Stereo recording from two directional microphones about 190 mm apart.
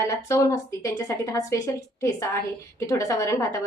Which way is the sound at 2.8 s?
15° left (ahead or behind).